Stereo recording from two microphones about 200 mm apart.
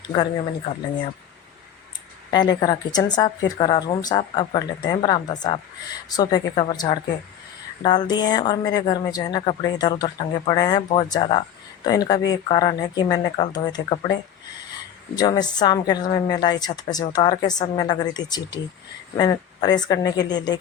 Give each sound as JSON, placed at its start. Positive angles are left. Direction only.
{"t": 2.3, "sound": "a woman's voice", "side_deg": 20}